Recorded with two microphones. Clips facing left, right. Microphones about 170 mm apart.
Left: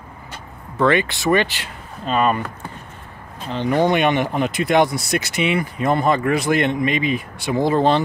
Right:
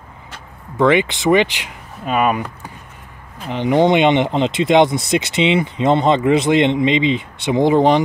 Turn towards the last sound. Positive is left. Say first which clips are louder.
# right 4 dB
turn(degrees=-15)  # may be behind; listen again after turning